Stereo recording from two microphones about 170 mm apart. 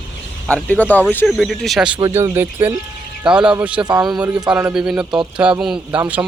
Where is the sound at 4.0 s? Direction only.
25° right (ahead or behind).